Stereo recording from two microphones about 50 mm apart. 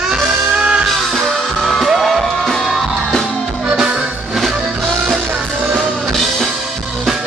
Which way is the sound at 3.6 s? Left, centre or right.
Centre.